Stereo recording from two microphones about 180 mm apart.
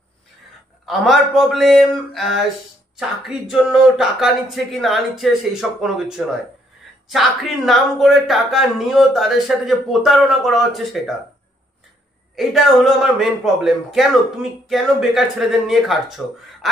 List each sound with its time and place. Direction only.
0.8 s speech: centre (ahead or behind)
12.4 s speech: centre (ahead or behind)